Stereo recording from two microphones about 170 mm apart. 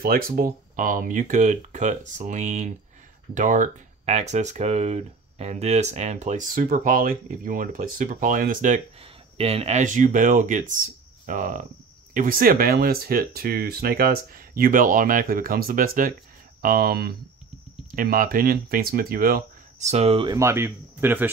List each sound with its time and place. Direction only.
0.0 s speech: 60° right (ahead or behind)
9.0 s speech: 35° right (ahead or behind); by 19.4 s 60° right (ahead or behind)
19.8 s speech: 40° right (ahead or behind)
20.3 s speech: 15° right (ahead or behind)